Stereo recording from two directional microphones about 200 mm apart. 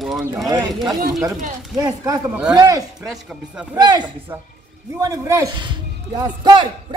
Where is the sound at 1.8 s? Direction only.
15° right (ahead or behind).